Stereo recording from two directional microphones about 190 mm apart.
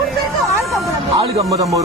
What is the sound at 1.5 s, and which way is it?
Music, 15° right (ahead or behind).